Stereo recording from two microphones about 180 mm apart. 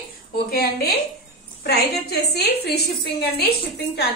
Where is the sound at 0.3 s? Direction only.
60° left (ahead or behind).